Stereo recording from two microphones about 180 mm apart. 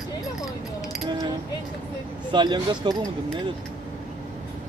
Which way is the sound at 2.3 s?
25° right (ahead or behind).